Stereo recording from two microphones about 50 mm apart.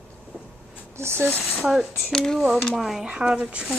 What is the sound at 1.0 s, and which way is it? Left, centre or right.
Speech, right.